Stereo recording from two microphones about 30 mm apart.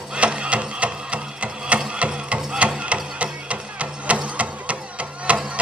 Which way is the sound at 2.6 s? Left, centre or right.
Right.